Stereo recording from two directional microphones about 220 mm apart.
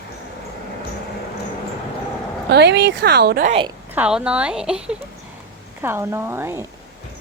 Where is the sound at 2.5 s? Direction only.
50° right (ahead or behind).